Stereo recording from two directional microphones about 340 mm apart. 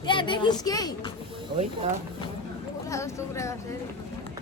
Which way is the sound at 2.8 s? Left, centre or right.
Centre.